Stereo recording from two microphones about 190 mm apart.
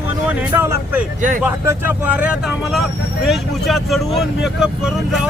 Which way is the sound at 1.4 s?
10° right (ahead or behind).